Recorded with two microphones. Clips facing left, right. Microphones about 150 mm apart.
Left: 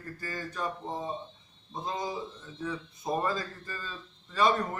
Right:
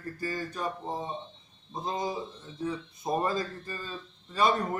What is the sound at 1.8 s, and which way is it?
Speech, 25° right (ahead or behind).